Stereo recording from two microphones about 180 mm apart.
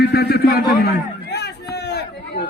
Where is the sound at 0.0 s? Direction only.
60° left (ahead or behind).